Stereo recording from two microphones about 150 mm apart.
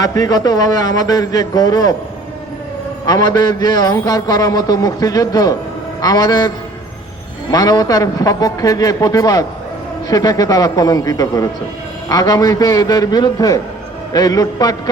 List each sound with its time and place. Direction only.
0.0 s a man's voice: 25° left (ahead or behind)
3.1 s a man's voice: 25° left (ahead or behind)
7.5 s a man's voice: 25° left (ahead or behind)